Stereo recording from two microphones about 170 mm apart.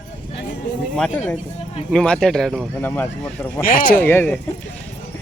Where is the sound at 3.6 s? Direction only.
55° left (ahead or behind).